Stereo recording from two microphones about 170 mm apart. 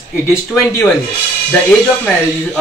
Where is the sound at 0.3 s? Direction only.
15° left (ahead or behind).